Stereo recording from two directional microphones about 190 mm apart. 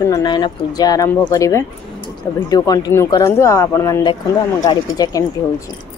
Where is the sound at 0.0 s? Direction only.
20° left (ahead or behind).